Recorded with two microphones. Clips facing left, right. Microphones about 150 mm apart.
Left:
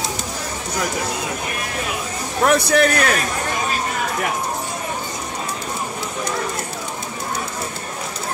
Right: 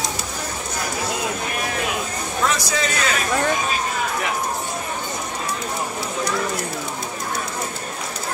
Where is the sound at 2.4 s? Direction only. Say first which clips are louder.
Left 8 dB; 60° left (ahead or behind).